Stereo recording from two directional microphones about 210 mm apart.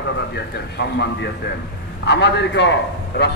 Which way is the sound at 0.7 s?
55° left (ahead or behind).